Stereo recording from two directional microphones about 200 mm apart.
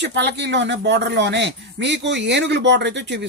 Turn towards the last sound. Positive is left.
turn(degrees=-60)  # may be behind; listen again after turning